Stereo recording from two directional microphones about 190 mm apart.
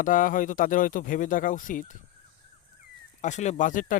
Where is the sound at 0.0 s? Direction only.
45° left (ahead or behind).